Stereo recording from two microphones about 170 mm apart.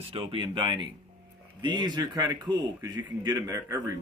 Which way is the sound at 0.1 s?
30° right (ahead or behind).